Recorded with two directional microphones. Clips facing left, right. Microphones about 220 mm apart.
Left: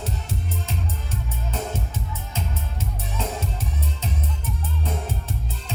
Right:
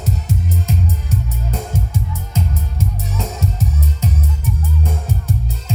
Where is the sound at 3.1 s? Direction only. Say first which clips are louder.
Right 4 dB; 40° right (ahead or behind).